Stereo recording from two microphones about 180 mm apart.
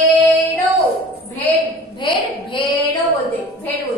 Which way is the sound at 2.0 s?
25° left (ahead or behind).